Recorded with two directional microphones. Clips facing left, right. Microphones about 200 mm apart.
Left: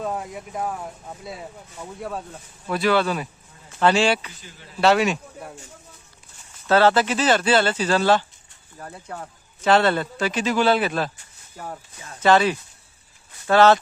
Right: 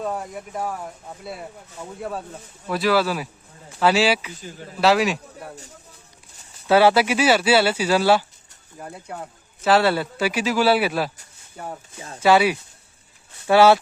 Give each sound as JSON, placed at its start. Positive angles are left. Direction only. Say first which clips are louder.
{"t": 0.0, "sound": "speech", "louder": "right 1 dB", "side_deg": 0}
{"t": 4.4, "sound": "speech", "louder": "right 9 dB", "side_deg": -45}
{"t": 4.8, "sound": "speech", "louder": "even", "side_deg": 0}
{"t": 6.7, "sound": "speech", "louder": "right 2 dB", "side_deg": -10}
{"t": 11.9, "sound": "speech", "louder": "right 4 dB", "side_deg": -30}
{"t": 12.2, "sound": "speech", "louder": "right 1 dB", "side_deg": -10}